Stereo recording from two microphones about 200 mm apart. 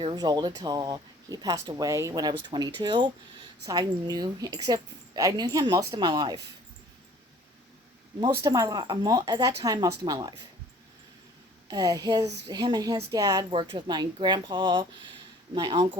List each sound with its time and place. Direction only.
0.0 s a woman's voice: 20° right (ahead or behind)
8.2 s a woman's voice: 20° right (ahead or behind)
11.7 s a woman's voice: 15° right (ahead or behind)